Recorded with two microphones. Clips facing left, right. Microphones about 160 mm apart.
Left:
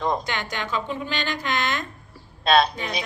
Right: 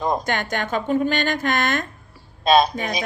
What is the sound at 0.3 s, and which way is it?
Speech, 50° right (ahead or behind).